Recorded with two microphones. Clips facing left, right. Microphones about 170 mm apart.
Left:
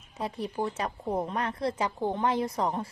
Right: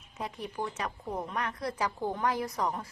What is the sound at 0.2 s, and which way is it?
Speech, 30° left (ahead or behind).